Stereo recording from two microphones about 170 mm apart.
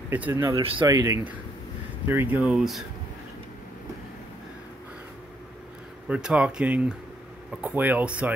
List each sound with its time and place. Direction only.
0.1 s speech: 10° right (ahead or behind)
0.4 s speech: 30° right (ahead or behind); by 2.8 s 5° right (ahead or behind)
6.0 s speech: 5° right (ahead or behind)